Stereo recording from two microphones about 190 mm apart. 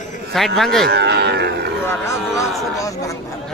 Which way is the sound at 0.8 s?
60° right (ahead or behind).